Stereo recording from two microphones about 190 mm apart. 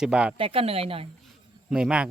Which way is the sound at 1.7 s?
5° right (ahead or behind).